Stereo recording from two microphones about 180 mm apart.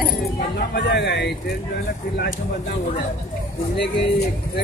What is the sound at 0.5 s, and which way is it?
Speech, 70° left (ahead or behind).